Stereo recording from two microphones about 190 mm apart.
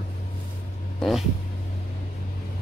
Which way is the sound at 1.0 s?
Centre (ahead or behind).